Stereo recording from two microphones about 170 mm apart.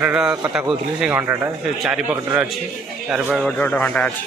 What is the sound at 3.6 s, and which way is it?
Speech, 10° left (ahead or behind).